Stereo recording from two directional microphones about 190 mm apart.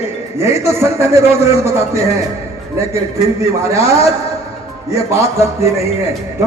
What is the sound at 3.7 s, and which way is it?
Speech, 15° right (ahead or behind).